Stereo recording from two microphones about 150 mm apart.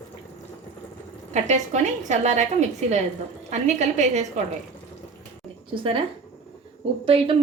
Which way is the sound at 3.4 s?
50° right (ahead or behind).